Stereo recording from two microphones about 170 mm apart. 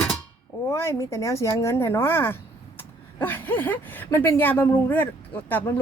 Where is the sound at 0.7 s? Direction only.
15° left (ahead or behind).